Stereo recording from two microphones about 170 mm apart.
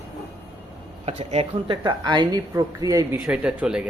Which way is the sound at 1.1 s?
35° right (ahead or behind).